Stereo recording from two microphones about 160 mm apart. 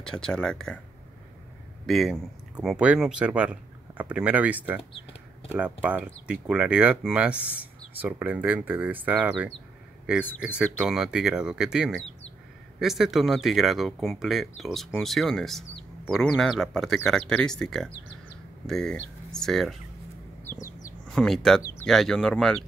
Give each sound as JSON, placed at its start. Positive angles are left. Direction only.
{"t": 0.0, "sound": "speech", "side_deg": 5}
{"t": 1.9, "sound": "speech", "side_deg": 0}
{"t": 20.4, "sound": "chicken", "side_deg": 20}
{"t": 21.1, "sound": "speech", "side_deg": 5}